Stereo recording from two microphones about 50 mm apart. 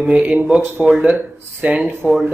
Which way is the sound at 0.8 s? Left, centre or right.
Right.